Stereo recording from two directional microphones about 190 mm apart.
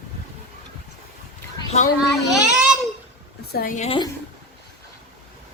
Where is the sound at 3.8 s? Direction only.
25° left (ahead or behind).